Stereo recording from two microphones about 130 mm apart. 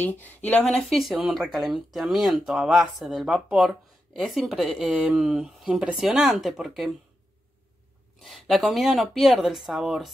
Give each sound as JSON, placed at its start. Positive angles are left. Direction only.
{"t": 0.0, "sound": "speech", "side_deg": 15}
{"t": 0.7, "sound": "speech", "side_deg": 0}
{"t": 8.2, "sound": "speech", "side_deg": 0}